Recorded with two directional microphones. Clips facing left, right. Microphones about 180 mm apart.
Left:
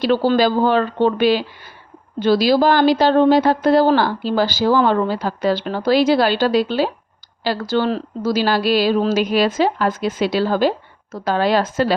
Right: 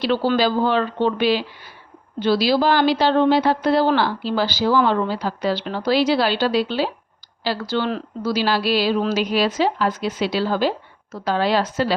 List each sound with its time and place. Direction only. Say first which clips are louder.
0.0 s a woman's voice: left 3 dB; 45° left (ahead or behind)